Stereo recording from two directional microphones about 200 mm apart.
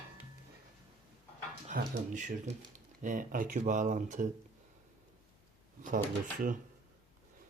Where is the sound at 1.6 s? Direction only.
35° right (ahead or behind).